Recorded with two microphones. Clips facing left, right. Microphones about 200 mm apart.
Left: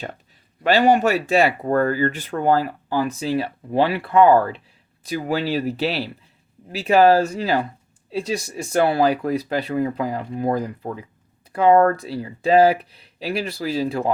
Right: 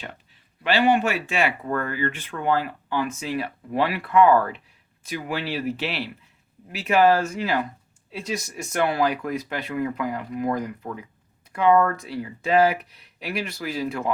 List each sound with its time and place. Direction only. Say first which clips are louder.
0.6 s speech: left 4 dB; 40° left (ahead or behind)